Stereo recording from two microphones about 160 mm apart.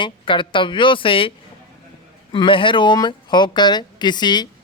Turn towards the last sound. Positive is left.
turn(degrees=25)  # may be behind; listen again after turning